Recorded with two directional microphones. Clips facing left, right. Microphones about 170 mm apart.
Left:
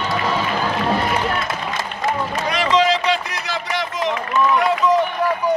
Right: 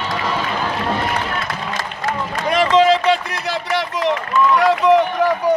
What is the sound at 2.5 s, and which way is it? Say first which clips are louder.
Run: right 5 dB; 50° right (ahead or behind).